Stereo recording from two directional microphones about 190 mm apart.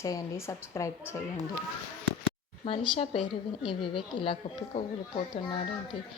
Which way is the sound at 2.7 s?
25° left (ahead or behind).